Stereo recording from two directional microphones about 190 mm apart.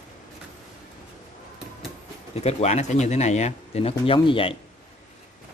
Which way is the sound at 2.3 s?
35° left (ahead or behind).